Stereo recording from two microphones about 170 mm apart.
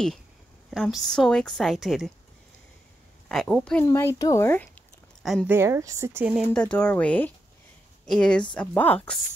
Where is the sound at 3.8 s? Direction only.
15° left (ahead or behind).